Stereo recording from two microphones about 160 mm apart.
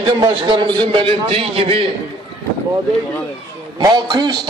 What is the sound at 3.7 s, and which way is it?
Speech, 30° right (ahead or behind).